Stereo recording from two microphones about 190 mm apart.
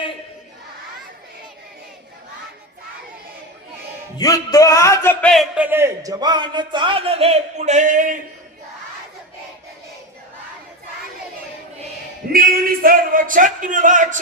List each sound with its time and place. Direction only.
4.2 s music: 20° left (ahead or behind)
5.3 s a man's voice: 5° right (ahead or behind); by 8.2 s 45° right (ahead or behind)
12.3 s a man's voice: 50° right (ahead or behind)